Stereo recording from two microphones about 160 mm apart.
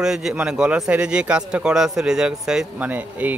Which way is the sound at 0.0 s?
5° right (ahead or behind).